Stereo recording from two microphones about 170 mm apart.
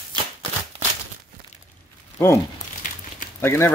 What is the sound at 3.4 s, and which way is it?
Speech, 15° left (ahead or behind).